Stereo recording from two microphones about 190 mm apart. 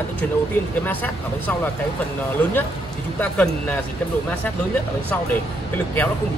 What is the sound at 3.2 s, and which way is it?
Speech, 5° left (ahead or behind).